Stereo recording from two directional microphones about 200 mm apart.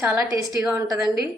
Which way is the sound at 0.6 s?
5° right (ahead or behind).